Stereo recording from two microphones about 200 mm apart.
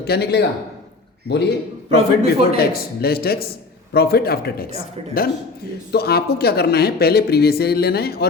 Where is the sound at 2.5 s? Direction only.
50° left (ahead or behind).